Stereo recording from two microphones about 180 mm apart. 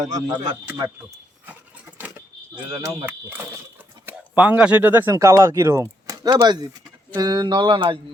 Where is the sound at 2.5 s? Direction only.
25° right (ahead or behind).